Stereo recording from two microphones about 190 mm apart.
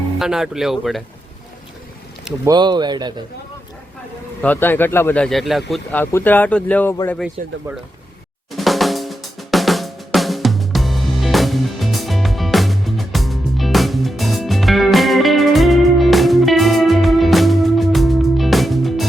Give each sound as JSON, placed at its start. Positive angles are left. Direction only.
{"t": 0.2, "sound": "speech", "side_deg": 0}
{"t": 2.4, "sound": "speech", "side_deg": -20}
{"t": 4.4, "sound": "speech", "side_deg": 10}
{"t": 7.4, "sound": "speech", "side_deg": -40}
{"t": 8.5, "sound": "drum", "side_deg": 0}